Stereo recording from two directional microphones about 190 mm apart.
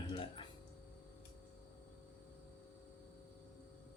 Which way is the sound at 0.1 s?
25° left (ahead or behind).